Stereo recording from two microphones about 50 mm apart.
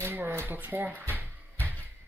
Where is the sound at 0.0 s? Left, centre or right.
Right.